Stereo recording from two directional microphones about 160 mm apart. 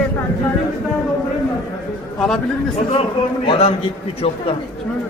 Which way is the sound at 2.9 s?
35° left (ahead or behind).